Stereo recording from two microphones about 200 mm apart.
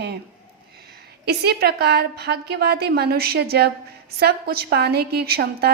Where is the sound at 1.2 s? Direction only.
55° right (ahead or behind).